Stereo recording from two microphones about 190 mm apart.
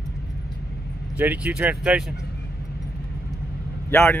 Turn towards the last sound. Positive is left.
turn(degrees=10)  # may be behind; listen again after turning